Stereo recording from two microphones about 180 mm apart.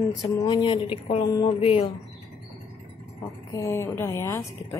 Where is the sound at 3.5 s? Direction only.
15° left (ahead or behind).